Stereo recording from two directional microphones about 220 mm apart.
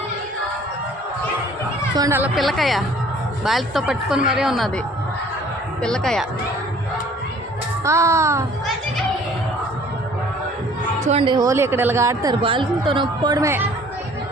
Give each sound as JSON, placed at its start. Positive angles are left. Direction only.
{"t": 2.0, "sound": "a woman's voice", "side_deg": -10}
{"t": 5.8, "sound": "a woman's voice", "side_deg": 5}
{"t": 7.9, "sound": "speech", "side_deg": -15}
{"t": 11.0, "sound": "speech", "side_deg": -25}